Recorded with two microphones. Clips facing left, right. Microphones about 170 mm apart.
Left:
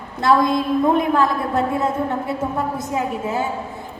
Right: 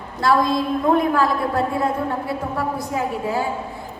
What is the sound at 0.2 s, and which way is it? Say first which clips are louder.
A woman's voice: left 1 dB; 20° left (ahead or behind).